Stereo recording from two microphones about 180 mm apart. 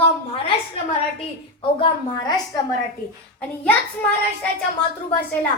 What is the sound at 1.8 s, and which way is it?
Speech, 20° left (ahead or behind).